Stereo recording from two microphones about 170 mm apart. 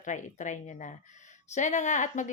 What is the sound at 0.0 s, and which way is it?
Speech, 45° left (ahead or behind).